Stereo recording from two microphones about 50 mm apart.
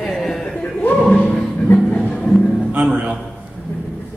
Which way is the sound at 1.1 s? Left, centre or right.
Left.